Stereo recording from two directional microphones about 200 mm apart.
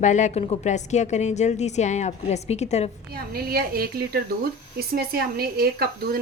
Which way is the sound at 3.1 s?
50° right (ahead or behind).